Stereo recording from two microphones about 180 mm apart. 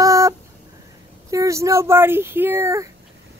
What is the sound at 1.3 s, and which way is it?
Speech, 15° right (ahead or behind).